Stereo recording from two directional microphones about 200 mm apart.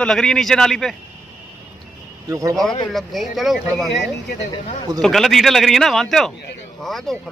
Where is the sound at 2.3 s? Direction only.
15° right (ahead or behind).